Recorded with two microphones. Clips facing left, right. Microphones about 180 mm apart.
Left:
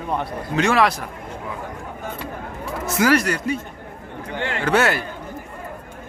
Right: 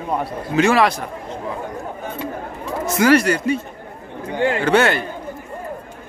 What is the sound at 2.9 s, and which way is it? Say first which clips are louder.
Speech: right 4 dB; centre (ahead or behind).